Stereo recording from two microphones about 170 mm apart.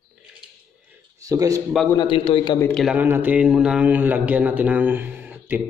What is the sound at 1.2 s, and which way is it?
Speech, 20° right (ahead or behind).